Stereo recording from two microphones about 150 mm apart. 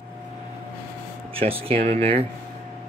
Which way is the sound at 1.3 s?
40° right (ahead or behind).